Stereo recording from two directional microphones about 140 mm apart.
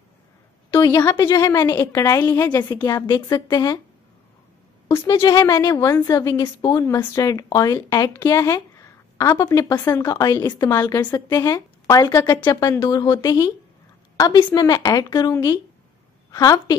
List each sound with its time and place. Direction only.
0.7 s a woman's voice: 20° left (ahead or behind)
4.8 s a sound: 20° left (ahead or behind)
5.1 s a woman's voice: 30° left (ahead or behind)